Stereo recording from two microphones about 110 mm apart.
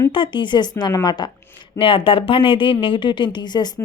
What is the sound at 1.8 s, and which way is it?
A woman's voice, 55° left (ahead or behind).